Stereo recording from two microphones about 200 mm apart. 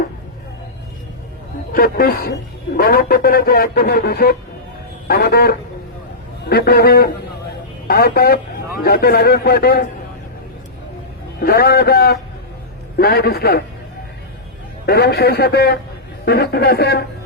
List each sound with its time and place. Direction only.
1.7 s a man's voice: 50° left (ahead or behind)
11.3 s a man's voice: 50° left (ahead or behind)
14.8 s a man's voice: 55° left (ahead or behind)